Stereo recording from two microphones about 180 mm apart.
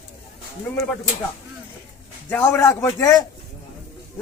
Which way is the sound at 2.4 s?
15° left (ahead or behind).